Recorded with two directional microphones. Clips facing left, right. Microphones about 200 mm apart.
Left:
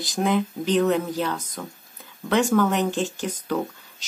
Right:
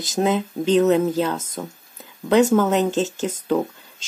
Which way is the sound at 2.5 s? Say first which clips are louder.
Right 3 dB; 20° right (ahead or behind).